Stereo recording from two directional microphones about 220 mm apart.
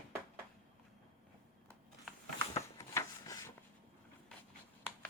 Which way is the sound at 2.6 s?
15° left (ahead or behind).